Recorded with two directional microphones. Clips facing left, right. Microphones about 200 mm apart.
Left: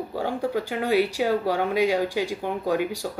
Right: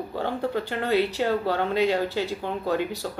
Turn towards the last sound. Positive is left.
turn(degrees=10)  # may be behind; listen again after turning